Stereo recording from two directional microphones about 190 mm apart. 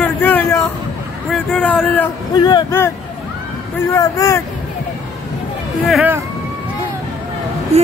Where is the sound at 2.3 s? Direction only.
20° left (ahead or behind).